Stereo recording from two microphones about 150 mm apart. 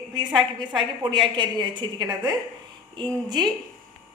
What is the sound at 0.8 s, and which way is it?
A woman's voice, 35° right (ahead or behind).